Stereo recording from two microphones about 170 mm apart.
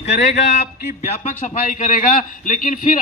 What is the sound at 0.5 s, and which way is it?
Speech, 40° left (ahead or behind).